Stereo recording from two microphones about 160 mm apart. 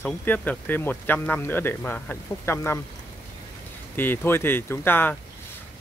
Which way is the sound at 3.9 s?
10° left (ahead or behind).